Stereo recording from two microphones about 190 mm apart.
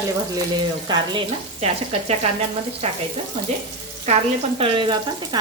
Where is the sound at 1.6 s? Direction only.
35° right (ahead or behind).